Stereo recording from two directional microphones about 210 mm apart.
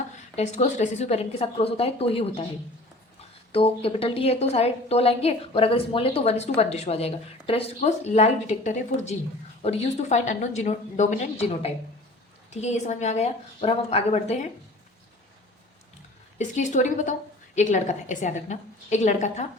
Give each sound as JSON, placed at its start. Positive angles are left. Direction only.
{"t": 0.3, "sound": "a woman's voice", "side_deg": 30}
{"t": 3.5, "sound": "a woman's voice", "side_deg": 25}
{"t": 16.4, "sound": "a woman's voice", "side_deg": 35}